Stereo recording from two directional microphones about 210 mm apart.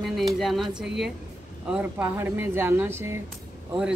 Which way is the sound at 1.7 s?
10° right (ahead or behind).